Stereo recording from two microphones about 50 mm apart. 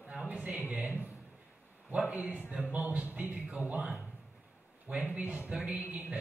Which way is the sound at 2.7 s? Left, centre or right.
Right.